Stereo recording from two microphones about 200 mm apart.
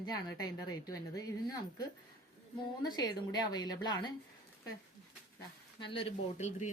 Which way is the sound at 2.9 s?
20° left (ahead or behind).